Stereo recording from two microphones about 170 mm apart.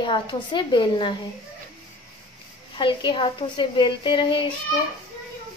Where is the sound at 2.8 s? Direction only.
30° left (ahead or behind).